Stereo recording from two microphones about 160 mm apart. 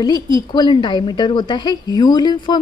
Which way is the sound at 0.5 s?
30° left (ahead or behind).